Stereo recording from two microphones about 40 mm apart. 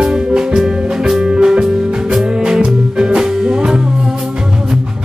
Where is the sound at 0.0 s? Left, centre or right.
Right.